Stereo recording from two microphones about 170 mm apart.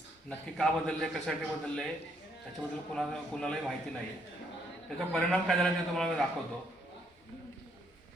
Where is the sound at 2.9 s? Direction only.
5° left (ahead or behind).